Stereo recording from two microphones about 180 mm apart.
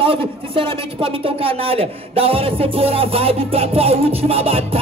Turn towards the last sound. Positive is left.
turn(degrees=-35)  # may be behind; listen again after turning